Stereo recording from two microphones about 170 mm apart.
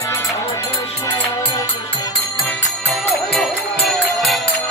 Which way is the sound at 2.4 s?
5° left (ahead or behind).